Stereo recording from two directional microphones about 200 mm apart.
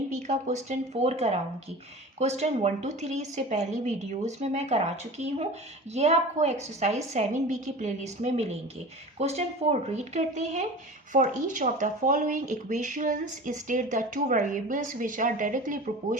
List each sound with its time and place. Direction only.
0.1 s speech: 35° right (ahead or behind)